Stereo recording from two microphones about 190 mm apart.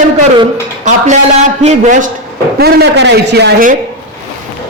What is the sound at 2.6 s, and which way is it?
Speech, 60° right (ahead or behind).